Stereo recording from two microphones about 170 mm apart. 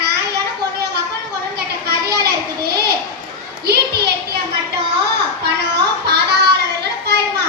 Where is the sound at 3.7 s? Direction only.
70° right (ahead or behind).